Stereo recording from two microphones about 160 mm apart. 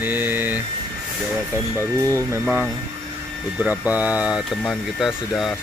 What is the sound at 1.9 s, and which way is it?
Speech, 20° right (ahead or behind).